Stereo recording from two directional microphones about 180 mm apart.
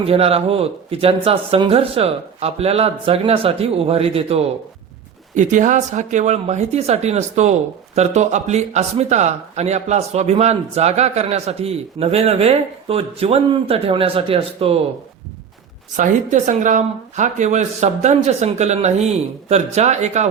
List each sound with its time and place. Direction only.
0.0 s speech: 35° right (ahead or behind)
5.3 s speech: 45° right (ahead or behind)
16.0 s speech: 45° right (ahead or behind)